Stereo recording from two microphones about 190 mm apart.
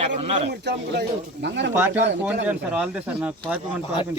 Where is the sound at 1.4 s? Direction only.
65° right (ahead or behind).